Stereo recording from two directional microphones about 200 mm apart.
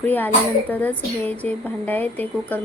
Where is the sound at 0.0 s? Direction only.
10° left (ahead or behind).